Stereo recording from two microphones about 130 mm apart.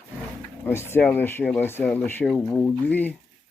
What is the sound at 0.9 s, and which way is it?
Speech, 15° left (ahead or behind).